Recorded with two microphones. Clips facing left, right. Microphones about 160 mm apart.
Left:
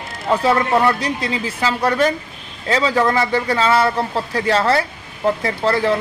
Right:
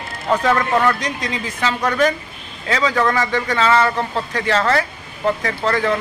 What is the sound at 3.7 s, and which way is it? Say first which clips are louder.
Speech: even; 10° left (ahead or behind).